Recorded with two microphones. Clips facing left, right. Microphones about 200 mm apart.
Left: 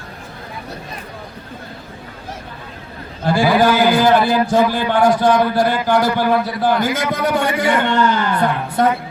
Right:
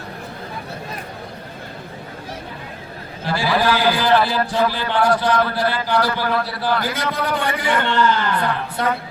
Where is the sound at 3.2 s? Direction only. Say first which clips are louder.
Left 6 dB; 50° left (ahead or behind).